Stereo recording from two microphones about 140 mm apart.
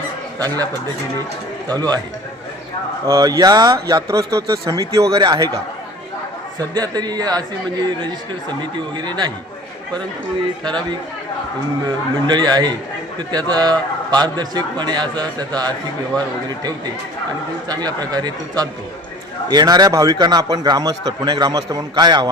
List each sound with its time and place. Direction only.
0.3 s a man's voice: 25° right (ahead or behind)
3.1 s a man's voice: 25° right (ahead or behind)
6.7 s a man's voice: 30° right (ahead or behind)
9.0 s a man's voice: 30° right (ahead or behind)
11.9 s a man's voice: 30° right (ahead or behind)
17.7 s a man's voice: 30° right (ahead or behind)